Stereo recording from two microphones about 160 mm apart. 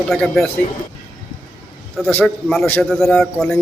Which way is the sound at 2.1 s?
5° left (ahead or behind).